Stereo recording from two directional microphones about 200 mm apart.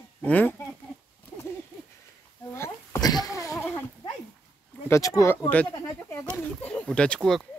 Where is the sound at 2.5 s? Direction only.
15° left (ahead or behind).